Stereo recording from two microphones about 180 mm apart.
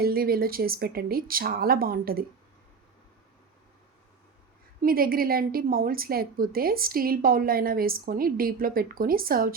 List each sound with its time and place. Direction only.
0.0 s a woman's voice: 55° right (ahead or behind)
4.8 s a woman's voice: 55° right (ahead or behind)